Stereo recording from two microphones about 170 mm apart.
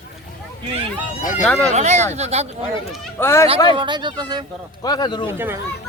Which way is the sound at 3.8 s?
25° right (ahead or behind).